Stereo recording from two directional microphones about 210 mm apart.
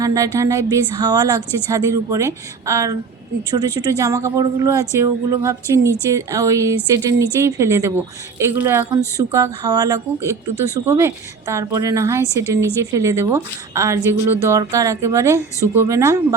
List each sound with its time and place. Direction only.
0.0 s a woman's voice: 15° right (ahead or behind)